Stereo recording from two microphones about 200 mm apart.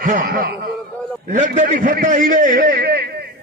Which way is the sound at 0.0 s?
45° right (ahead or behind).